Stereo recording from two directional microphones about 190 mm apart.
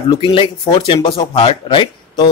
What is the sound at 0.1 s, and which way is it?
Speech, 30° left (ahead or behind).